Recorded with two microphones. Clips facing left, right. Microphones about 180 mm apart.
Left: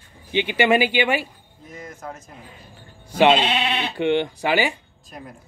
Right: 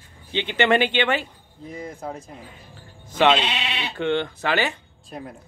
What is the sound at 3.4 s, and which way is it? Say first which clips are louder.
Speech: left 5 dB; 50° left (ahead or behind).